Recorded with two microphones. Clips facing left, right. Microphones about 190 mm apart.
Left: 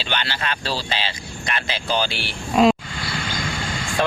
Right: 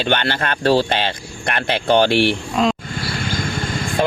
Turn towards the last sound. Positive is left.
turn(degrees=-50)  # may be behind; listen again after turning